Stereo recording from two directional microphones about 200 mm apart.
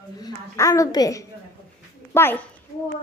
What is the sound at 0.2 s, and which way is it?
A woman's voice, 15° left (ahead or behind).